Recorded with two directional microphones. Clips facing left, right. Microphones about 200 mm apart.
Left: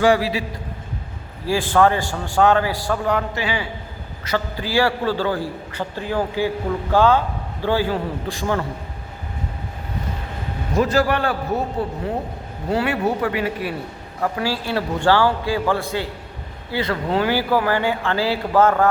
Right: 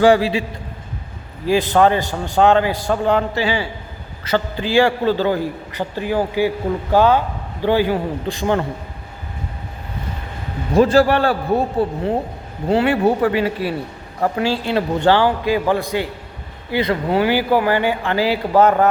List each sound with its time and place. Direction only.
0.0 s a man's voice: 30° right (ahead or behind)
1.7 s a man's voice: 20° right (ahead or behind)
10.8 s a man's voice: 30° right (ahead or behind)